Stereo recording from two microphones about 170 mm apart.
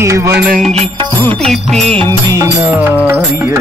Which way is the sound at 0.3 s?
65° right (ahead or behind).